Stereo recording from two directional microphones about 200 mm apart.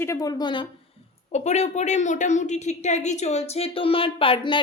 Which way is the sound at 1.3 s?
35° left (ahead or behind).